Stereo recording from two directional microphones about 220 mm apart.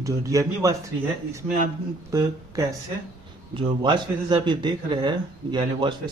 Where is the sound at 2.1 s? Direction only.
15° right (ahead or behind).